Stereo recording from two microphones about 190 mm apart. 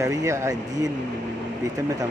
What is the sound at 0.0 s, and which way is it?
Speech, 15° right (ahead or behind).